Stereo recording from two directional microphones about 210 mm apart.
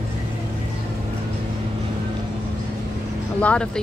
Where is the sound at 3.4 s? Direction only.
5° left (ahead or behind).